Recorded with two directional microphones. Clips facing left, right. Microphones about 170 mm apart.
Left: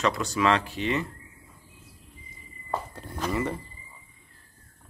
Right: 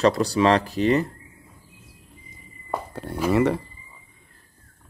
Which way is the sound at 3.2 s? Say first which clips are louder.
Right 9 dB; 70° right (ahead or behind).